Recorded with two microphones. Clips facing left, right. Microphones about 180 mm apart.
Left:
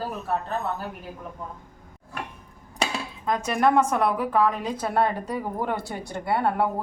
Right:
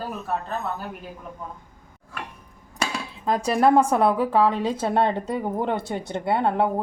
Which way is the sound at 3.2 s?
35° right (ahead or behind).